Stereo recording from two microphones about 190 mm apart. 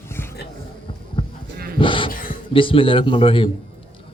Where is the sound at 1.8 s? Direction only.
25° left (ahead or behind).